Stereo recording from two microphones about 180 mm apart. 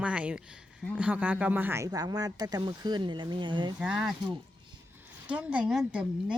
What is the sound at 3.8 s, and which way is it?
Speech, 5° right (ahead or behind).